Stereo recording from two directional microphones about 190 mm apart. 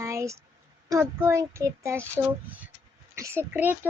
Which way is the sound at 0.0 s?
15° right (ahead or behind).